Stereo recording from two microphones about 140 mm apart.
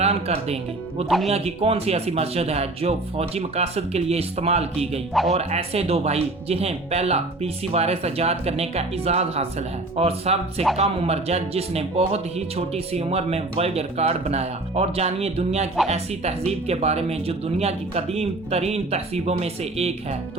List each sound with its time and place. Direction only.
0.0 s music: 50° right (ahead or behind)
0.4 s speech: 50° right (ahead or behind)
1.0 s speech: centre (ahead or behind)
1.3 s speech: 45° right (ahead or behind)